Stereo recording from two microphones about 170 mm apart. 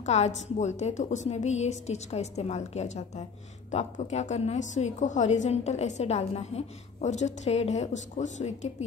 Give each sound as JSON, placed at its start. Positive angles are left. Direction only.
{"t": 0.0, "sound": "a woman's voice", "side_deg": 40}